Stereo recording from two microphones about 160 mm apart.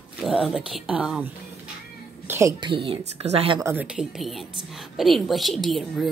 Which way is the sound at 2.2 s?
15° right (ahead or behind).